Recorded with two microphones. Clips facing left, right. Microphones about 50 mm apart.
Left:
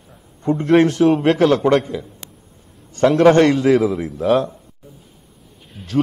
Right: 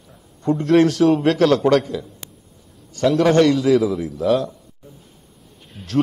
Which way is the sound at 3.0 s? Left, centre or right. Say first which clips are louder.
Left 3 dB; left.